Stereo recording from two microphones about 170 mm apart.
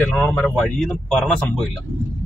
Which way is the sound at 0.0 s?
10° left (ahead or behind).